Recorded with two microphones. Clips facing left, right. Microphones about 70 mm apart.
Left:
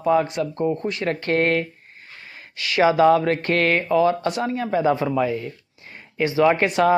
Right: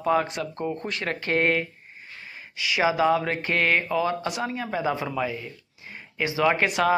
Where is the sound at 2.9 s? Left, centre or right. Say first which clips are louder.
Left 6 dB; left.